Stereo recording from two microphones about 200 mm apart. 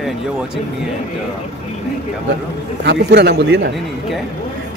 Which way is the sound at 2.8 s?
55° right (ahead or behind).